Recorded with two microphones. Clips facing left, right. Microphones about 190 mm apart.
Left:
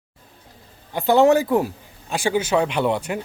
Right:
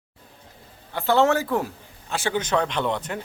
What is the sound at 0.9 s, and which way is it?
A man's voice, 15° left (ahead or behind).